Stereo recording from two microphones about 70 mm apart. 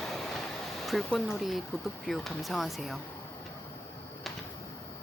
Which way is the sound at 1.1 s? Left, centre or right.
Centre.